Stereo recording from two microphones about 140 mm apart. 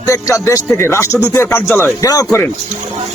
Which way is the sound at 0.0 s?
20° left (ahead or behind).